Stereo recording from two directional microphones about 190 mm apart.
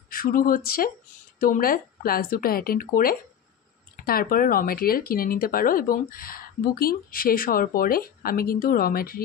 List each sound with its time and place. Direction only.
0.1 s speech: 50° left (ahead or behind)